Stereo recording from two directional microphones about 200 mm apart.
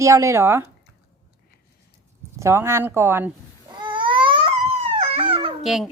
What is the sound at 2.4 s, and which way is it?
Speech, 15° right (ahead or behind).